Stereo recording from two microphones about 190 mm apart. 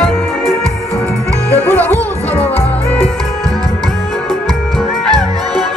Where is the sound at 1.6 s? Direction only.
10° left (ahead or behind).